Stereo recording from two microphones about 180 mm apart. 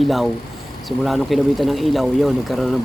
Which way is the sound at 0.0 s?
Centre (ahead or behind).